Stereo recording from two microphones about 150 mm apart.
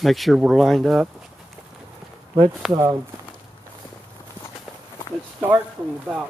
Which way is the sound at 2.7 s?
25° right (ahead or behind).